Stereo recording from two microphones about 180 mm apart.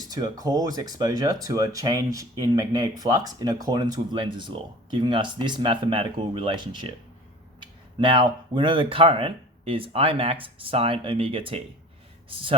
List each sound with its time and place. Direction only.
0.1 s speech: 20° right (ahead or behind)